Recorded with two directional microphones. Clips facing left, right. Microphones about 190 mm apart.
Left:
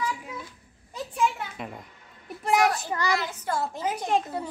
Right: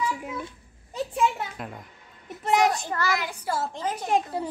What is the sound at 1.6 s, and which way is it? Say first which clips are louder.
Babbling: even; centre (ahead or behind).